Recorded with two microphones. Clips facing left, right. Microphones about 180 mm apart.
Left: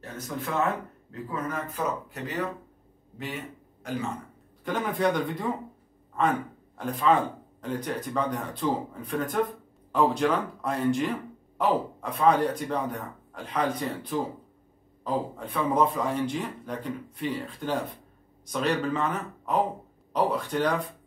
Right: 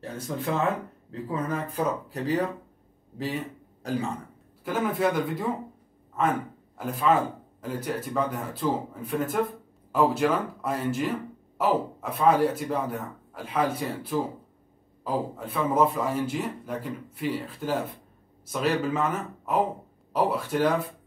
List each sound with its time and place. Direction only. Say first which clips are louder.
1.1 s a man's voice: right 3 dB; 30° right (ahead or behind)
4.6 s speech: right 1 dB; 5° right (ahead or behind)